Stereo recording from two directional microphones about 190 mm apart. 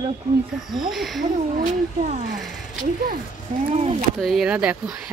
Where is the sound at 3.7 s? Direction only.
35° right (ahead or behind).